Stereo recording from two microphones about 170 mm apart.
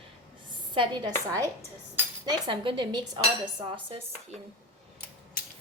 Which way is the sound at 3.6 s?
30° right (ahead or behind).